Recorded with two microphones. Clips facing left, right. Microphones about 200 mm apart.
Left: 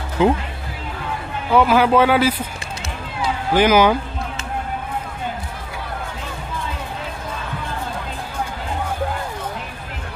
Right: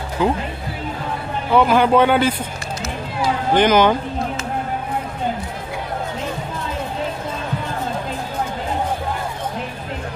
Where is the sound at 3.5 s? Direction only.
10° left (ahead or behind).